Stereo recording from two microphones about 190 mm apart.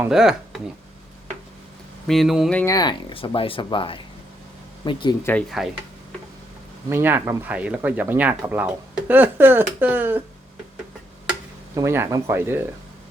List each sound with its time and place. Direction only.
0.0 s speech: 5° right (ahead or behind)
2.0 s a sound: centre (ahead or behind)
2.7 s speech: 25° left (ahead or behind)
5.6 s a sound: centre (ahead or behind)
6.9 s speech: 10° right (ahead or behind)
11.7 s speech: 15° right (ahead or behind)